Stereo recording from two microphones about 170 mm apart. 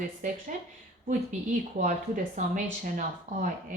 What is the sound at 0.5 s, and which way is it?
Speech, 50° right (ahead or behind).